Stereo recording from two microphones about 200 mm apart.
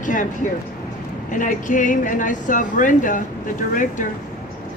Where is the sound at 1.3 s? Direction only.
40° left (ahead or behind).